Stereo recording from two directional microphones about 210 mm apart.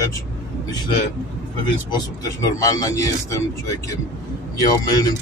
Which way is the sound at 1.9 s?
20° left (ahead or behind).